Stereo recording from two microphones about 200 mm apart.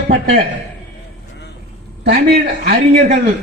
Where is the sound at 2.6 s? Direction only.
45° right (ahead or behind).